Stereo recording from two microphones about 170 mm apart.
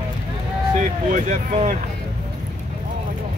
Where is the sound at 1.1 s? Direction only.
45° right (ahead or behind).